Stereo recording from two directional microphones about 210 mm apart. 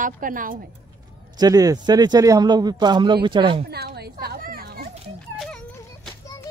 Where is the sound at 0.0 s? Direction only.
40° right (ahead or behind).